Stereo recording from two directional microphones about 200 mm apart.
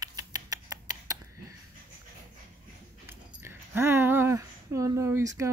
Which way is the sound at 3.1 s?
10° right (ahead or behind).